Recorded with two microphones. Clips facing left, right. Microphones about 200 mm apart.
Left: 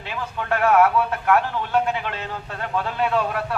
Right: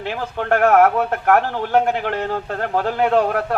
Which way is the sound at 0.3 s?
50° right (ahead or behind).